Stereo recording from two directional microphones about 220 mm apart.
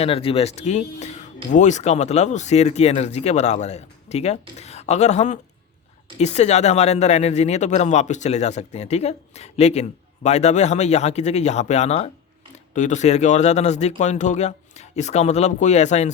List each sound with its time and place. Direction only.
0.0 s speech: 25° left (ahead or behind)